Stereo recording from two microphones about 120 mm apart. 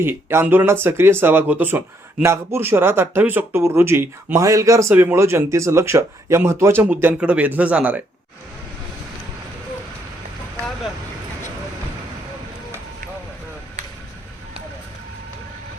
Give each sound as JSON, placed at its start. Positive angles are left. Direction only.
{"t": 0.0, "sound": "speech", "side_deg": -20}